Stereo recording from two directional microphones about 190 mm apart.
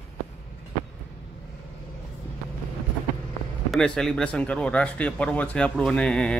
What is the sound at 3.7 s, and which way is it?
Speech, 5° left (ahead or behind).